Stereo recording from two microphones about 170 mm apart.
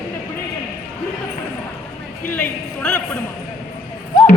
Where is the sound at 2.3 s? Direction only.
5° left (ahead or behind).